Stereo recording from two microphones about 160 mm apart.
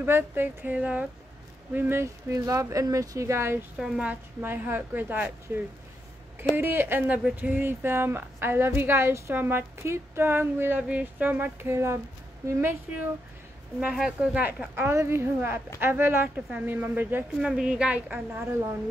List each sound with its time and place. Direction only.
0.0 s speech: 15° right (ahead or behind)
3.7 s speech: 5° right (ahead or behind)
6.3 s speech: 15° right (ahead or behind)
13.7 s speech: 5° right (ahead or behind)